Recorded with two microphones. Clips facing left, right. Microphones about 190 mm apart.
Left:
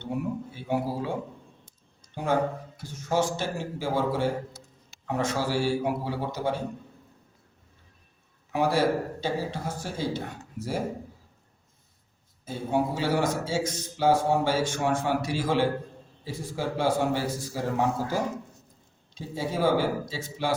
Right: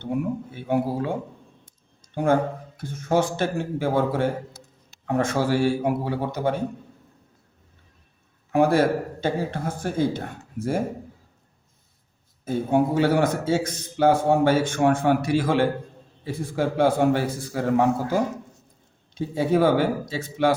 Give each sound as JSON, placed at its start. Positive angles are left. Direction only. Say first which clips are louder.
{"t": 0.0, "sound": "a man's voice", "louder": "right 4 dB", "side_deg": -55}
{"t": 2.1, "sound": "a man's voice", "louder": "right 5 dB", "side_deg": -50}
{"t": 8.5, "sound": "speech", "louder": "right 5 dB", "side_deg": -50}
{"t": 12.5, "sound": "a man's voice", "louder": "right 6 dB", "side_deg": -55}